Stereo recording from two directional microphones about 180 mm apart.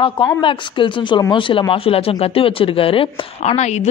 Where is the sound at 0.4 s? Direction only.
25° left (ahead or behind).